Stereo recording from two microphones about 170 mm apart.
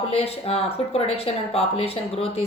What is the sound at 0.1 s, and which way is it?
A woman's voice, 35° left (ahead or behind).